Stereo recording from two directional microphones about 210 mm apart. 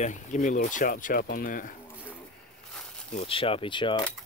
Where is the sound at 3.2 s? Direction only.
25° left (ahead or behind).